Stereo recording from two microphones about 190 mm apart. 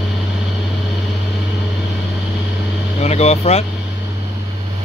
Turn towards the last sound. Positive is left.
turn(degrees=35)  # may be behind; listen again after turning